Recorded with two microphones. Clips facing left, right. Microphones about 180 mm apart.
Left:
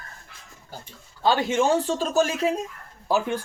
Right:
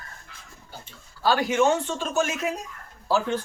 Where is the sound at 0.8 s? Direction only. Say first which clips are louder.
Left 2 dB; 20° left (ahead or behind).